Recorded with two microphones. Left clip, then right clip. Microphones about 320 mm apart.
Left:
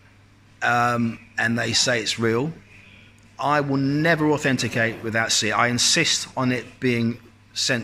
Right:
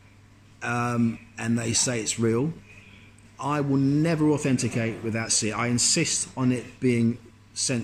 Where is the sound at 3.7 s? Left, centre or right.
Left.